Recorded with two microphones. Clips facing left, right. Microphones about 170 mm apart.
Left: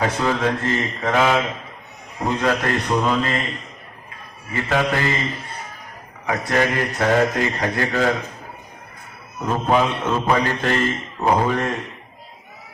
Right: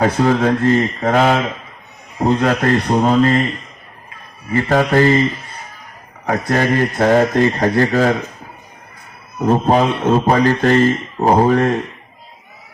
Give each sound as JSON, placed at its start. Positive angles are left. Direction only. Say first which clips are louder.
{"t": 0.0, "sound": "a man's voice", "louder": "right 6 dB", "side_deg": -40}
{"t": 4.5, "sound": "a man's voice", "louder": "right 7 dB", "side_deg": -40}
{"t": 6.2, "sound": "a man's voice", "louder": "right 4 dB", "side_deg": -40}
{"t": 9.4, "sound": "a man's voice", "louder": "right 5 dB", "side_deg": -40}